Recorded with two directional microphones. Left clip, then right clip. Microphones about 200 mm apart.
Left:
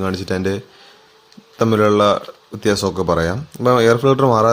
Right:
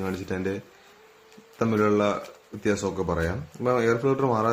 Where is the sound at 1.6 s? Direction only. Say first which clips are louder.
Left 9 dB; 45° left (ahead or behind).